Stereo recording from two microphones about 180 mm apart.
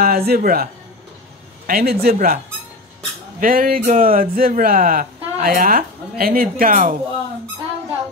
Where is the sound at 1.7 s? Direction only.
60° right (ahead or behind).